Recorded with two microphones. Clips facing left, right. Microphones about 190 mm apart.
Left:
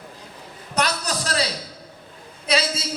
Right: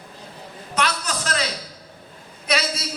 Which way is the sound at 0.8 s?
40° left (ahead or behind).